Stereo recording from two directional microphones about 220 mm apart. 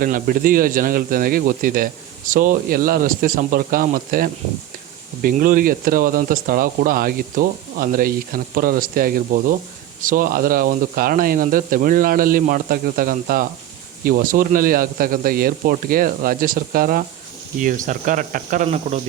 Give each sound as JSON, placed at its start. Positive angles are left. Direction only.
{"t": 0.0, "sound": "speech", "side_deg": -40}